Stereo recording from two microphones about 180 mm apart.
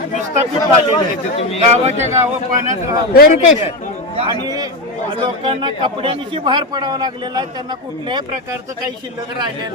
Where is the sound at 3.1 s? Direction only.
50° left (ahead or behind).